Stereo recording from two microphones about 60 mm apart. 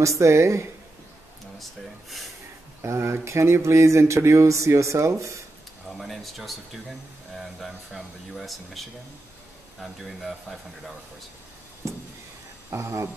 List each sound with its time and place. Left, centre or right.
0.2 s speech: right
1.6 s a sound: centre
2.8 s speech: right
5.9 s speech: centre
11.8 s speech: right